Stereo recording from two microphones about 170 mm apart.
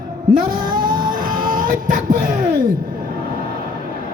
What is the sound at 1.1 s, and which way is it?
Sneeze, 55° right (ahead or behind).